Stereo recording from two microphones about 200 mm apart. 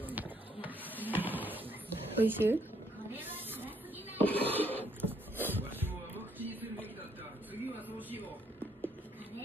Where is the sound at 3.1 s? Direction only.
10° right (ahead or behind).